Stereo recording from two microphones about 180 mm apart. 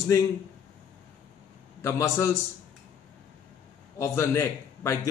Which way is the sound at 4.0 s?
15° left (ahead or behind).